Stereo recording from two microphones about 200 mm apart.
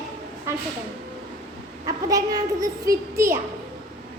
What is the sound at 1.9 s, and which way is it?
A child's voice, 20° right (ahead or behind).